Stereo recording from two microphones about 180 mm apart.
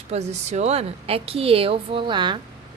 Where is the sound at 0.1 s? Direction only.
35° right (ahead or behind).